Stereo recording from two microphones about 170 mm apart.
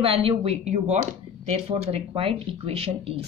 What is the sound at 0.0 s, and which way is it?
Speech, 35° right (ahead or behind).